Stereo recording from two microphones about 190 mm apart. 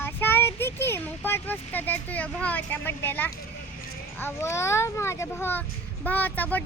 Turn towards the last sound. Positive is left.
turn(degrees=10)  # may be behind; listen again after turning